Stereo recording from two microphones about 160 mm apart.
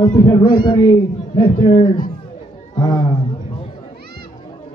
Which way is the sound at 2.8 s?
25° left (ahead or behind).